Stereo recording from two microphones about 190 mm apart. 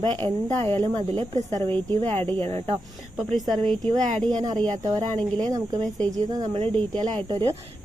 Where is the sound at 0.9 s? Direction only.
25° right (ahead or behind).